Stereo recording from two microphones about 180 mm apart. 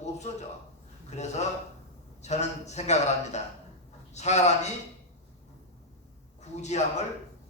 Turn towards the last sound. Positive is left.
turn(degrees=40)  # may be behind; listen again after turning